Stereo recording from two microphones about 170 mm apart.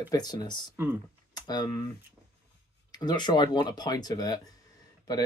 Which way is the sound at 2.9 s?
25° left (ahead or behind).